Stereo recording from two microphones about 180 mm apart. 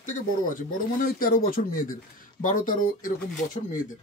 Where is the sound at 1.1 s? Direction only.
50° left (ahead or behind).